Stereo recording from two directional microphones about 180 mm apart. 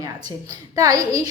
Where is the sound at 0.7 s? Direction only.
20° right (ahead or behind).